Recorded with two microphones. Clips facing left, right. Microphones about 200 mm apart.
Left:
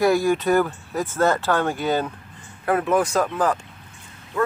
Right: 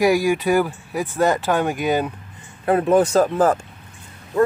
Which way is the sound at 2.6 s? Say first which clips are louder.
Right 4 dB; 30° right (ahead or behind).